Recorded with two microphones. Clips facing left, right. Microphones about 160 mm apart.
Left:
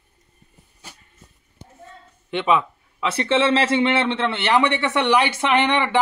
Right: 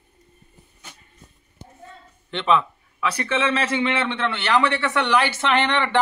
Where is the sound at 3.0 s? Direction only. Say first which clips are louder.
Left 4 dB; 25° left (ahead or behind).